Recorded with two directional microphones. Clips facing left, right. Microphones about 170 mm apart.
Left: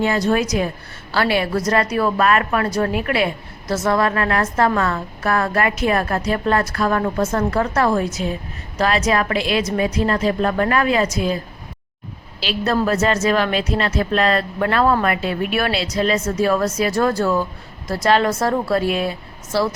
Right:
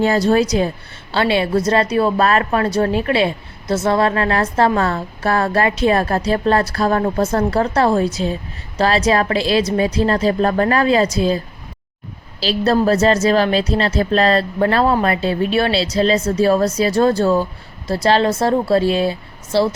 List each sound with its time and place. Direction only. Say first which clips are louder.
0.0 s a woman's voice: right 4 dB; 35° right (ahead or behind)
12.4 s a woman's voice: right 4 dB; 35° right (ahead or behind)